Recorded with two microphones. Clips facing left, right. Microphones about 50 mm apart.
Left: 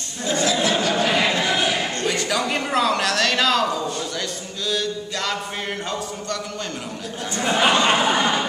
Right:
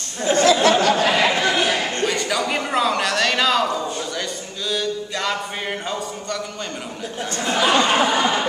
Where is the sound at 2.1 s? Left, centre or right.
Centre.